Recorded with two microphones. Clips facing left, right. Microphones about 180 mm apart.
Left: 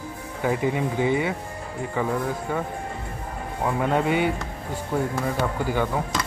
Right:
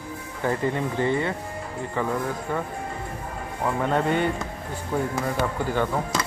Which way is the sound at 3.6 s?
10° left (ahead or behind).